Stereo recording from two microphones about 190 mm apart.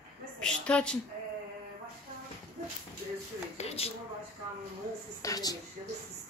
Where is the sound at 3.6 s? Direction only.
35° left (ahead or behind).